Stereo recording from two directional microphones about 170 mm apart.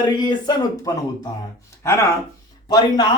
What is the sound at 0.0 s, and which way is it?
Speech, 25° left (ahead or behind).